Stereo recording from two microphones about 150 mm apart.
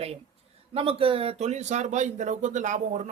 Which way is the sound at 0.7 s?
40° right (ahead or behind).